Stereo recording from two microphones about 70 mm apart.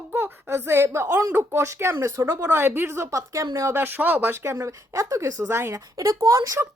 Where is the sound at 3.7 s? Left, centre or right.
Right.